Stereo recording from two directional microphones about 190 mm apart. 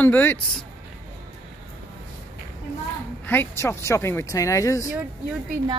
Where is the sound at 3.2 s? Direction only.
10° left (ahead or behind).